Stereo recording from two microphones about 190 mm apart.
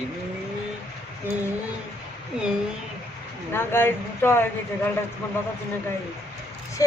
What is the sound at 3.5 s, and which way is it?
Speech, 10° left (ahead or behind).